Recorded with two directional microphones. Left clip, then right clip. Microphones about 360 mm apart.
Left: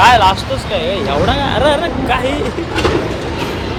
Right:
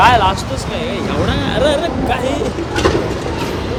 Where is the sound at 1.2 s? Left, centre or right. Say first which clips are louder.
Left 2 dB; centre.